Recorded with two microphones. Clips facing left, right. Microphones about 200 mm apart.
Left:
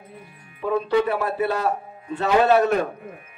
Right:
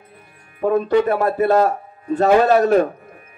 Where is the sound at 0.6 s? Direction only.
45° right (ahead or behind).